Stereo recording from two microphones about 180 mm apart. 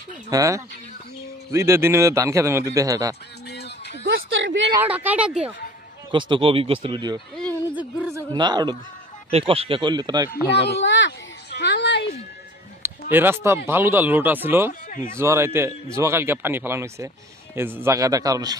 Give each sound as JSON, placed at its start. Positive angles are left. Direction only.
{"t": 0.3, "sound": "a man's voice", "side_deg": -15}
{"t": 3.4, "sound": "a sound", "side_deg": 70}
{"t": 4.1, "sound": "a woman's voice", "side_deg": -80}
{"t": 4.8, "sound": "a man's voice", "side_deg": -10}
{"t": 6.1, "sound": "speech", "side_deg": -25}
{"t": 7.7, "sound": "speech", "side_deg": -10}
{"t": 10.7, "sound": "speech", "side_deg": 85}
{"t": 11.5, "sound": "a sound", "side_deg": 75}
{"t": 13.1, "sound": "a man's voice", "side_deg": -10}